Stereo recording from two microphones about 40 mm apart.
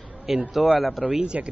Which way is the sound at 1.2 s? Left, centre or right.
Right.